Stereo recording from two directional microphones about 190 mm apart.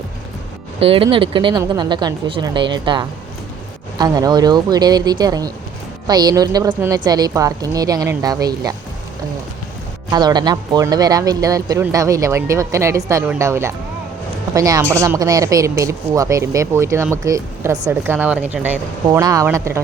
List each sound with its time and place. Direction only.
0.8 s a woman's voice: 30° right (ahead or behind)
10.1 s a woman's voice: 20° right (ahead or behind)